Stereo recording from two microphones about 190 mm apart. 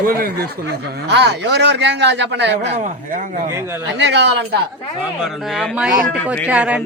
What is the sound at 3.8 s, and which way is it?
Speech, 65° right (ahead or behind).